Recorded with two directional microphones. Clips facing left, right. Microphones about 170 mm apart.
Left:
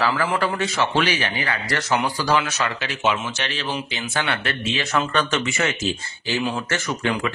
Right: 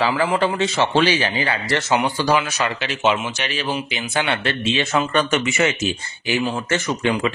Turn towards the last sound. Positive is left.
turn(degrees=-20)  # may be behind; listen again after turning